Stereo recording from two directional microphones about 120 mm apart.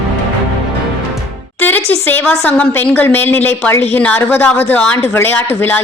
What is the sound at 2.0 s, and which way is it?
A woman's voice, 15° left (ahead or behind).